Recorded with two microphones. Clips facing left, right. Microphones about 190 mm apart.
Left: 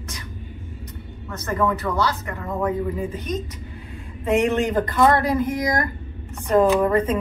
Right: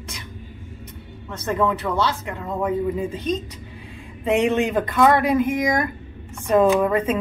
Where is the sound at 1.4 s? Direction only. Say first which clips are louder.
Right 1 dB; 15° right (ahead or behind).